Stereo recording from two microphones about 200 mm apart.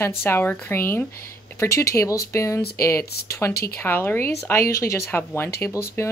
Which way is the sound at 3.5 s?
50° left (ahead or behind).